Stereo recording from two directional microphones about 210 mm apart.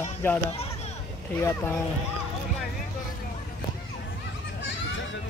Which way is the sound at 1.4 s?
10° left (ahead or behind).